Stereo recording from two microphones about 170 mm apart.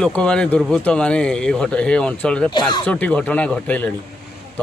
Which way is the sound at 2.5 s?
25° left (ahead or behind).